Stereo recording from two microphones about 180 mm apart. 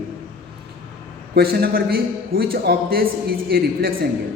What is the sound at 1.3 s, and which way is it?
A man's voice, 55° right (ahead or behind).